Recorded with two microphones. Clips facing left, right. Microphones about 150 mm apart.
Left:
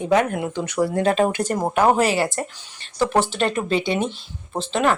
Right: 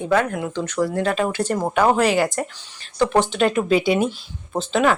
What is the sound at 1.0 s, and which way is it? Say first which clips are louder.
Speech: left 2 dB; 25° left (ahead or behind).